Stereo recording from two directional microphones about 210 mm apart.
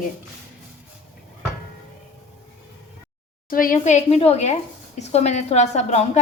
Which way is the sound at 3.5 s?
40° left (ahead or behind).